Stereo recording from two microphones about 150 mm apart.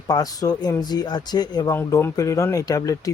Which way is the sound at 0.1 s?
25° left (ahead or behind).